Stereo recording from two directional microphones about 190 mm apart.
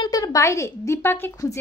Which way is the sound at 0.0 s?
20° left (ahead or behind).